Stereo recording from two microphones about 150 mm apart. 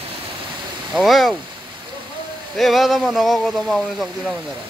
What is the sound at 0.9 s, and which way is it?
Speech, centre (ahead or behind).